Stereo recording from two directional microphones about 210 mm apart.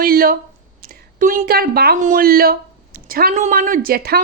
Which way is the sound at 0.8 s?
45° right (ahead or behind).